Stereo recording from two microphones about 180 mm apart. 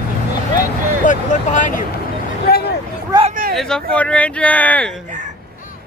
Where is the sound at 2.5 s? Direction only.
60° left (ahead or behind).